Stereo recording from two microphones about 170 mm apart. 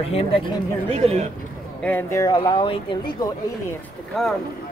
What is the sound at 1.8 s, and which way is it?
Speech, 15° left (ahead or behind).